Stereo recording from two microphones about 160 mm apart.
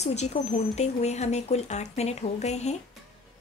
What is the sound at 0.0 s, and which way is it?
A woman's voice, 45° left (ahead or behind).